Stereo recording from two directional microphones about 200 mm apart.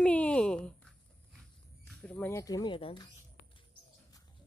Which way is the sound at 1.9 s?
5° left (ahead or behind).